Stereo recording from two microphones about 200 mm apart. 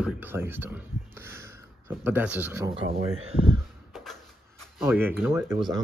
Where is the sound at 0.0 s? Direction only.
10° right (ahead or behind).